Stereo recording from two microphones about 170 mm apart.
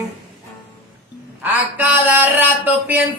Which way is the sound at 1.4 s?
10° right (ahead or behind).